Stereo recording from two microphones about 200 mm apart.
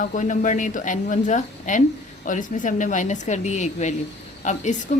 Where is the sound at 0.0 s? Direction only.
40° left (ahead or behind).